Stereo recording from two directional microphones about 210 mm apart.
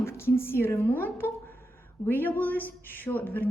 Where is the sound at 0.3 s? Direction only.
10° left (ahead or behind).